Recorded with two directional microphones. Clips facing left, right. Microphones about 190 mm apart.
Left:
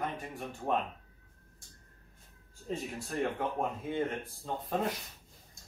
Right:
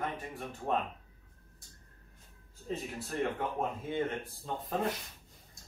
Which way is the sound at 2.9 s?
Centre (ahead or behind).